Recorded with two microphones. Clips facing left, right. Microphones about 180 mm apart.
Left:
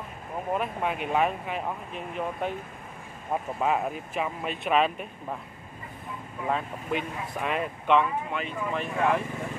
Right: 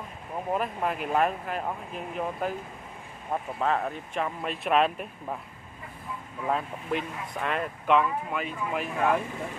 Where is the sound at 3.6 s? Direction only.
10° left (ahead or behind).